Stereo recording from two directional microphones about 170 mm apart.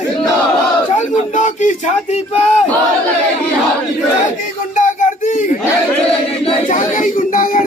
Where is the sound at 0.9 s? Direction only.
45° left (ahead or behind).